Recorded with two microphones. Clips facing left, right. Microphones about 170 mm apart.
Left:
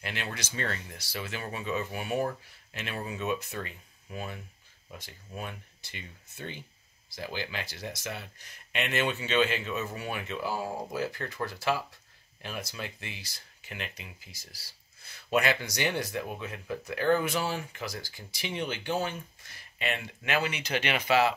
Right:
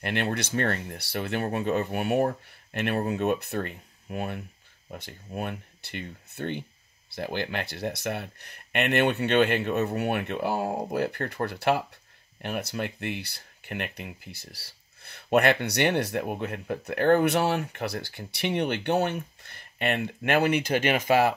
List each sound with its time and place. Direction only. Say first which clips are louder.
0.0 s speech: right 9 dB; 60° right (ahead or behind)